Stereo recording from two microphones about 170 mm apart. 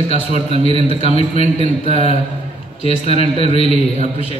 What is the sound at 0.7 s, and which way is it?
Speech, 35° left (ahead or behind).